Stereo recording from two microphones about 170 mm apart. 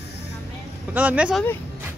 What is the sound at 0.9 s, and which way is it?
Speech, 10° right (ahead or behind).